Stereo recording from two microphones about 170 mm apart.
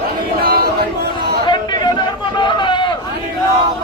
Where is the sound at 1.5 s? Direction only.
25° left (ahead or behind).